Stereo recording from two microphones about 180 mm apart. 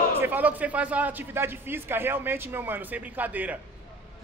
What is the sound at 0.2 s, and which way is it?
Speech, 10° right (ahead or behind).